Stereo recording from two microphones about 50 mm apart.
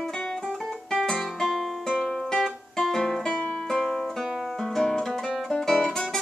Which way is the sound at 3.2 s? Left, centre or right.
Centre.